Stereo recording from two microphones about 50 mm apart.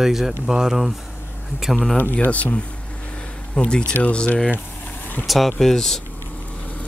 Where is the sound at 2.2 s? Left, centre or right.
Left.